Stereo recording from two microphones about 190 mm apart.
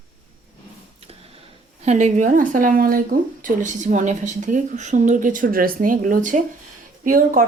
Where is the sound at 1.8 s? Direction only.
35° right (ahead or behind).